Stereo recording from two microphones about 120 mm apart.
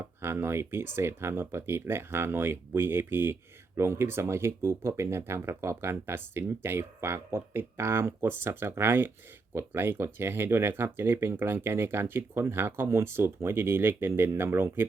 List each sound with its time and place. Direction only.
0.2 s speech: 20° right (ahead or behind)